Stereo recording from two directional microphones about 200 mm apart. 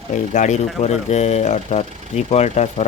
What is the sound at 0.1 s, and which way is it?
A man's voice, 35° left (ahead or behind).